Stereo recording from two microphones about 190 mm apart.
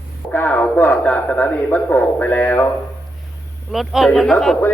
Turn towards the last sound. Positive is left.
turn(degrees=5)  # may be behind; listen again after turning